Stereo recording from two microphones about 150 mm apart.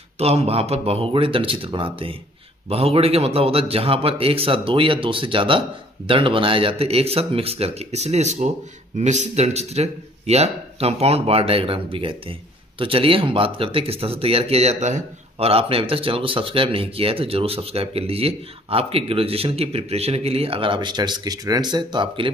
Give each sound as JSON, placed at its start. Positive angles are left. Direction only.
{"t": 0.2, "sound": "speech", "side_deg": -45}